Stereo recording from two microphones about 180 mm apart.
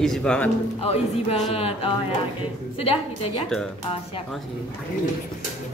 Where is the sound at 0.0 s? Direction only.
5° left (ahead or behind).